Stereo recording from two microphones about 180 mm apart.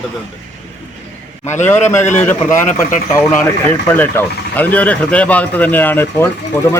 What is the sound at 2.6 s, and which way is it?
Speech, 45° left (ahead or behind).